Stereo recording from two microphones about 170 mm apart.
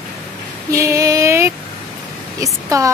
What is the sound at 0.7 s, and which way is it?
Female singing, 20° right (ahead or behind).